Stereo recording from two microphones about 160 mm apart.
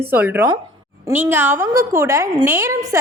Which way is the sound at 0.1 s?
10° right (ahead or behind).